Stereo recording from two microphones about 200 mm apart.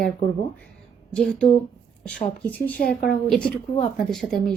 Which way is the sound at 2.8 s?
50° left (ahead or behind).